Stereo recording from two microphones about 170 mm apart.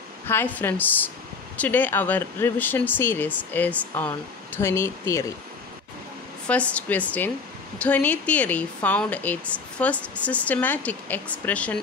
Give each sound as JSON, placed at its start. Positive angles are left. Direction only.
{"t": 0.3, "sound": "speech", "side_deg": 10}
{"t": 6.4, "sound": "speech", "side_deg": 5}